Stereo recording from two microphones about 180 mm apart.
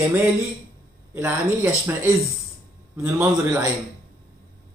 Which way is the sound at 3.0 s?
10° right (ahead or behind).